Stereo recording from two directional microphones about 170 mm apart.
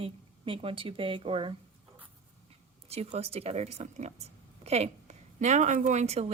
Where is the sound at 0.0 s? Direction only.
30° right (ahead or behind).